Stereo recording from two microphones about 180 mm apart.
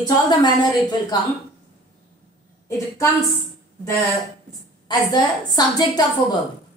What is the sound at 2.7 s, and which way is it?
A woman's voice, 15° left (ahead or behind).